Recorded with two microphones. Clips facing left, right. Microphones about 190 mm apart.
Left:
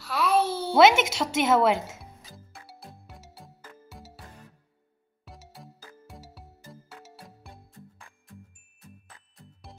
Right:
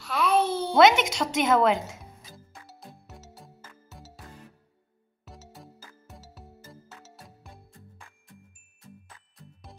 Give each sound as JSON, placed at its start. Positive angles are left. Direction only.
{"t": 0.0, "sound": "a sound", "side_deg": 5}
{"t": 2.9, "sound": "music", "side_deg": 10}
{"t": 6.2, "sound": "music", "side_deg": 10}
{"t": 7.2, "sound": "music", "side_deg": 0}